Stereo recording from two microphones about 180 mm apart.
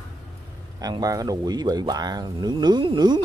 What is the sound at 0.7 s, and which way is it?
Speech, 20° right (ahead or behind).